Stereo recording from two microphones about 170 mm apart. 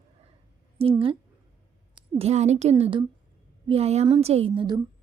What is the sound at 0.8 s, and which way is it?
Speech, 35° right (ahead or behind).